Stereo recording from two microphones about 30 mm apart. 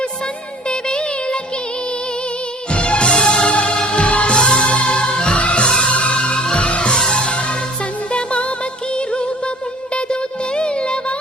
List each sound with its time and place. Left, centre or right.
0.7 s music: left
2.7 s music: left
5.4 s music: left
9.9 s music: left